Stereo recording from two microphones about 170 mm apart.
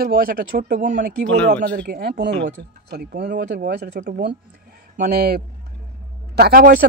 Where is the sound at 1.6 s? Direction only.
85° right.